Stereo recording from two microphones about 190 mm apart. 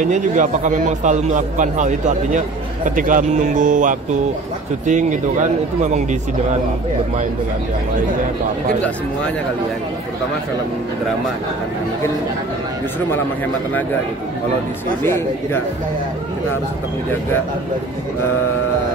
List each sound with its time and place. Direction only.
0.0 s a man's voice: 40° right (ahead or behind)
15.0 s speech: 10° left (ahead or behind)